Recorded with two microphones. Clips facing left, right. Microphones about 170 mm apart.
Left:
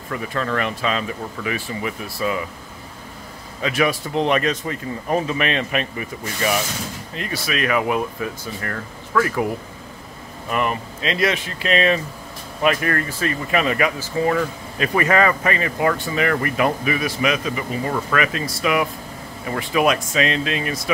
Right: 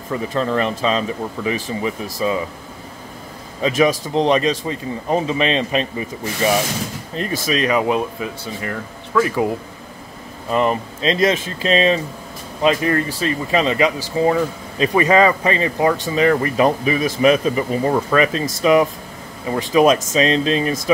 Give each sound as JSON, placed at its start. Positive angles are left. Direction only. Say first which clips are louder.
{"t": 0.1, "sound": "speech", "louder": "right 4 dB", "side_deg": -25}
{"t": 4.1, "sound": "speech", "louder": "right 3 dB", "side_deg": -25}
{"t": 10.5, "sound": "speech", "louder": "right 5 dB", "side_deg": -30}